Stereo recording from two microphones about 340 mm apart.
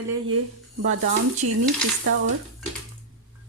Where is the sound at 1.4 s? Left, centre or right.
Right.